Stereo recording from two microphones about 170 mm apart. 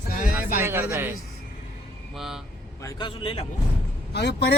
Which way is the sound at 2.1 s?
Centre (ahead or behind).